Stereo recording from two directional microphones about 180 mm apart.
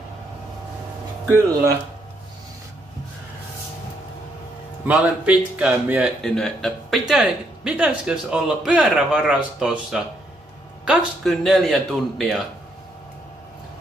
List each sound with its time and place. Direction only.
4.8 s speech: 10° right (ahead or behind)
6.2 s speech: 5° left (ahead or behind)